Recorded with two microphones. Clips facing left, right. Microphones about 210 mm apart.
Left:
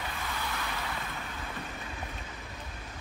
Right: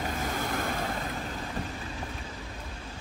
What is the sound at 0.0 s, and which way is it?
Vehicle, 45° right (ahead or behind).